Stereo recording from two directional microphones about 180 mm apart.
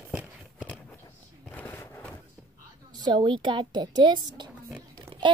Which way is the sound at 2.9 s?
25° right (ahead or behind).